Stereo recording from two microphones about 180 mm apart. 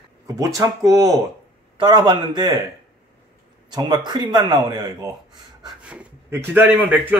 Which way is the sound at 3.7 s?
25° right (ahead or behind).